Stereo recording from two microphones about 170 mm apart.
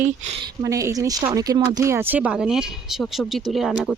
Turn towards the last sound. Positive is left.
turn(degrees=0)  # may be behind; listen again after turning